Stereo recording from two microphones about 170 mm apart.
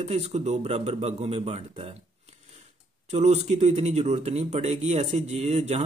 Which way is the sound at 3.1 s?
40° right (ahead or behind).